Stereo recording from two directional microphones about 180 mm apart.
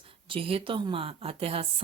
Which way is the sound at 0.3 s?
30° right (ahead or behind).